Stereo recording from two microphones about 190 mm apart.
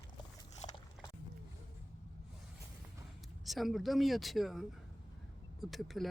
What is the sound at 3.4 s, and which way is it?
Speech, centre (ahead or behind).